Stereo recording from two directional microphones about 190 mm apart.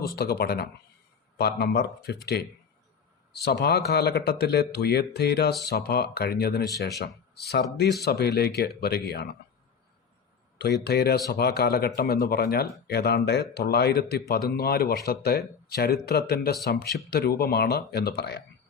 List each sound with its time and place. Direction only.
0.2 s speech: 55° left (ahead or behind)
10.8 s speech: 60° left (ahead or behind)